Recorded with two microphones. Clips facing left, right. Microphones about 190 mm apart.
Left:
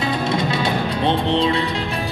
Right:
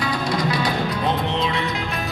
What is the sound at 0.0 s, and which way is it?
Music, 25° left (ahead or behind).